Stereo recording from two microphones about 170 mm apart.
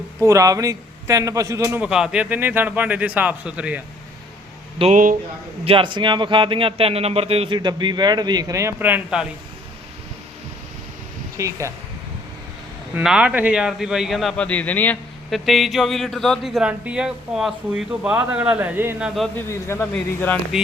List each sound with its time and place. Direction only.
0.2 s a man's voice: 20° right (ahead or behind)
4.8 s a man's voice: 30° right (ahead or behind); by 9.2 s 5° right (ahead or behind)
11.3 s a man's voice: 20° right (ahead or behind)
12.9 s speech: 5° right (ahead or behind)
19.5 s speech: 15° left (ahead or behind)